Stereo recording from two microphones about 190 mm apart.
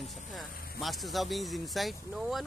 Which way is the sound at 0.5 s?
50° left (ahead or behind).